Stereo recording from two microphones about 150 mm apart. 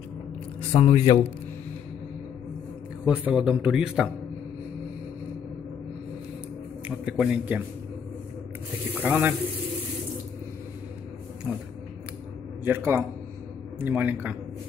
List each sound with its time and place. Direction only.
0.6 s speech: 40° left (ahead or behind)
3.1 s a man's voice: 5° right (ahead or behind)
7.1 s a man's voice: 10° right (ahead or behind)
8.9 s speech: 10° right (ahead or behind)
12.6 s a man's voice: 15° right (ahead or behind)